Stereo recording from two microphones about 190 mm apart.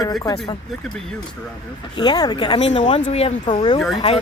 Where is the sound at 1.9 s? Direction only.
20° left (ahead or behind).